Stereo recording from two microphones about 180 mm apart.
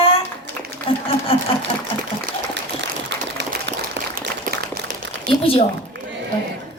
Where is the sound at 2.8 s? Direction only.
75° right (ahead or behind).